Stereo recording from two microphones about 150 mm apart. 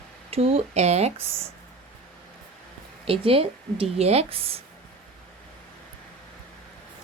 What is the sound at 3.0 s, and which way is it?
A woman's voice, 40° right (ahead or behind).